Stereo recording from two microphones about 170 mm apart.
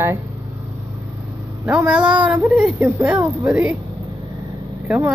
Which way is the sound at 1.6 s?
10° right (ahead or behind).